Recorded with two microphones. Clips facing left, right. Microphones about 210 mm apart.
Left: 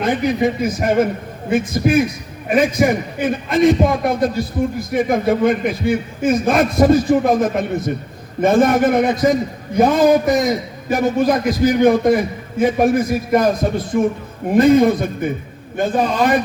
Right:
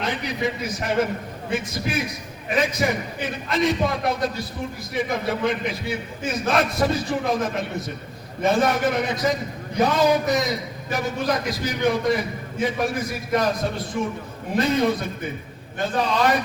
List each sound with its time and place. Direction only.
0.0 s a man's voice: 50° left (ahead or behind)